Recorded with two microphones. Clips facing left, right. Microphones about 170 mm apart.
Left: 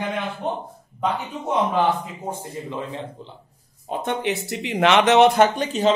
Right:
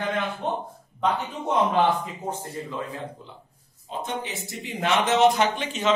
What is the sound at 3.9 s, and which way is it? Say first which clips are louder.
Speech: left 7 dB; 65° left (ahead or behind).